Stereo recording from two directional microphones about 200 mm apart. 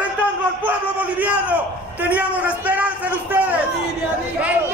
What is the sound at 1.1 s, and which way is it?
A man's voice, 5° right (ahead or behind).